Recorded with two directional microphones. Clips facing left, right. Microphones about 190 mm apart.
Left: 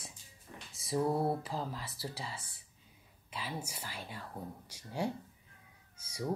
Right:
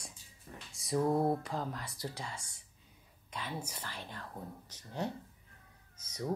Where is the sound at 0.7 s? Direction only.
Centre (ahead or behind).